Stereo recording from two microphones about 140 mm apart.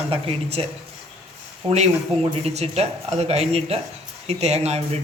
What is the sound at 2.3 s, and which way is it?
Speech, 50° right (ahead or behind).